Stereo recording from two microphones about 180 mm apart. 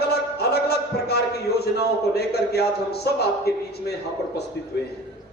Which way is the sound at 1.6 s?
60° left (ahead or behind).